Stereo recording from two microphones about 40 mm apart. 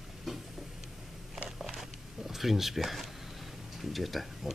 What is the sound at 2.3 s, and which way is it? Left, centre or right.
Speech, centre.